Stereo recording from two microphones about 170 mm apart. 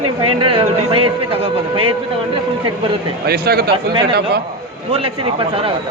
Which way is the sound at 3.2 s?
65° right (ahead or behind).